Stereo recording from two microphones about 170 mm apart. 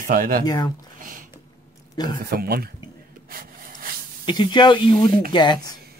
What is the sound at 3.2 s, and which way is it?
Wood, 60° right (ahead or behind).